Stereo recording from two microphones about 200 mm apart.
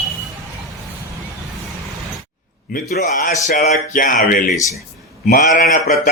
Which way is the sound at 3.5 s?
40° left (ahead or behind).